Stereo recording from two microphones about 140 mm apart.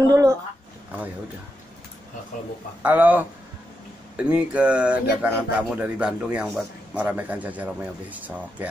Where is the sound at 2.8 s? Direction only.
10° right (ahead or behind).